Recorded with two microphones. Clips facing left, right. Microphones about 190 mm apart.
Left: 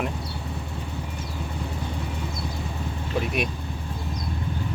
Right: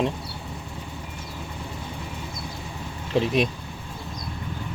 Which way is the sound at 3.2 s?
30° right (ahead or behind).